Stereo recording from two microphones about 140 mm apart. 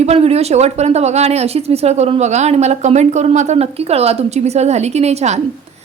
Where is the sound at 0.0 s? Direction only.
45° right (ahead or behind).